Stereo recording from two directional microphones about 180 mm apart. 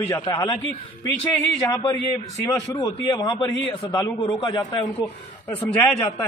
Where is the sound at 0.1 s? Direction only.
25° left (ahead or behind).